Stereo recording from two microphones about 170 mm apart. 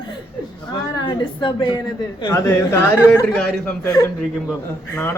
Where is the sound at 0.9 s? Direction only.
30° left (ahead or behind).